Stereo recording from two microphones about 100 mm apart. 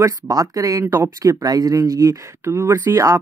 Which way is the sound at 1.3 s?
40° right (ahead or behind).